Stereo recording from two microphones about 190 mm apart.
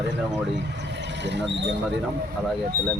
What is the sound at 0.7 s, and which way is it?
Speech, 65° right (ahead or behind).